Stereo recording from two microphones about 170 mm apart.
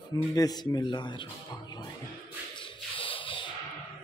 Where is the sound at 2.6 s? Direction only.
30° left (ahead or behind).